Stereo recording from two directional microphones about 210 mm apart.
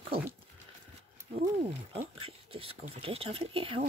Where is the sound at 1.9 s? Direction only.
25° right (ahead or behind).